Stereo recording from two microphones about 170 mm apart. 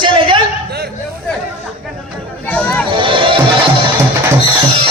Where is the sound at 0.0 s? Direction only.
30° right (ahead or behind).